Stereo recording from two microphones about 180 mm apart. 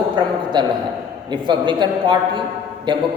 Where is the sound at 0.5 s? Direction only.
25° right (ahead or behind).